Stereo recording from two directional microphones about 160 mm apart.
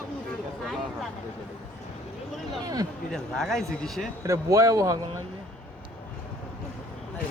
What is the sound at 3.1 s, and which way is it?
Speech, centre (ahead or behind).